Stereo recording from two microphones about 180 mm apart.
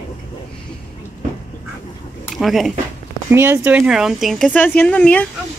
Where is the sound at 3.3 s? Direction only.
10° right (ahead or behind); by 5.3 s 5° left (ahead or behind).